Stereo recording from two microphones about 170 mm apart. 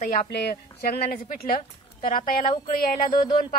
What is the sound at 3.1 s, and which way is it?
Speech, 25° left (ahead or behind).